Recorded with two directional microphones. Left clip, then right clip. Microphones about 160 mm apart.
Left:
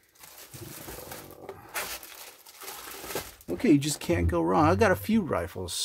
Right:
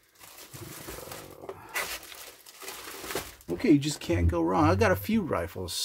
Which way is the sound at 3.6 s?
50° left (ahead or behind).